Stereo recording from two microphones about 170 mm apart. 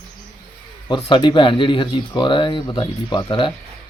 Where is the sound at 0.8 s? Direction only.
25° left (ahead or behind).